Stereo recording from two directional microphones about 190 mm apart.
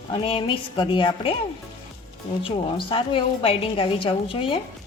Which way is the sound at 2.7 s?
25° left (ahead or behind).